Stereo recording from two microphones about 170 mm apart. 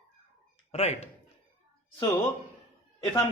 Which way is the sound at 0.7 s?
40° left (ahead or behind).